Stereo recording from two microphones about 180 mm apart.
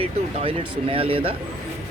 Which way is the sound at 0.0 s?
30° right (ahead or behind).